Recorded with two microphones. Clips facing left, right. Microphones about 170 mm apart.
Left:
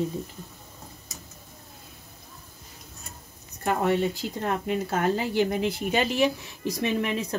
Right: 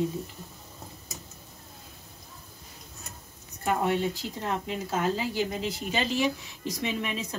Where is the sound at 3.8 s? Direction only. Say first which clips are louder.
Left 3 dB; 60° left (ahead or behind).